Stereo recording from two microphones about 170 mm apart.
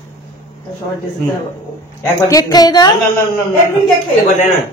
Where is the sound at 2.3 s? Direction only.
20° left (ahead or behind).